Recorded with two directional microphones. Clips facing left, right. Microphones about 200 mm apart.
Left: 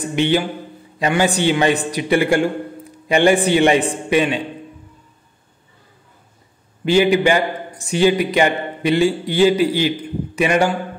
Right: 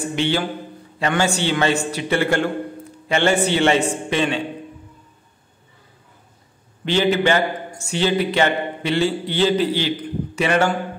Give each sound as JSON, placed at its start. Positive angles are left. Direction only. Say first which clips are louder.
{"t": 0.1, "sound": "a man's voice", "louder": "left 5 dB", "side_deg": 15}
{"t": 6.8, "sound": "a man's voice", "louder": "left 4 dB", "side_deg": 10}